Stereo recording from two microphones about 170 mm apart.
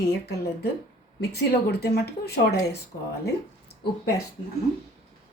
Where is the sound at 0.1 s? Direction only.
70° left (ahead or behind).